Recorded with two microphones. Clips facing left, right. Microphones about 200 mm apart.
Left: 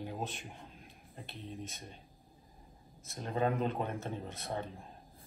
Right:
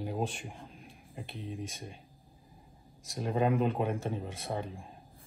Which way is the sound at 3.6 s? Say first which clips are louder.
Right 5 dB; 5° right (ahead or behind).